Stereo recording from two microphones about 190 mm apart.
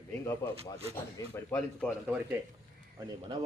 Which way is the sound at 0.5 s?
30° right (ahead or behind).